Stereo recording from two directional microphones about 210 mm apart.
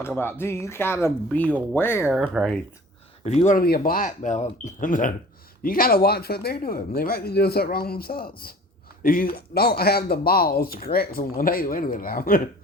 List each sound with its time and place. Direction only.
0.1 s speech: 10° left (ahead or behind)
2.0 s speech: 5° right (ahead or behind)
3.2 s speech: 35° left (ahead or behind)